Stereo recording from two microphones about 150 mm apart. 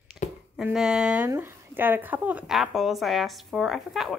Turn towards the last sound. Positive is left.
turn(degrees=0)  # may be behind; listen again after turning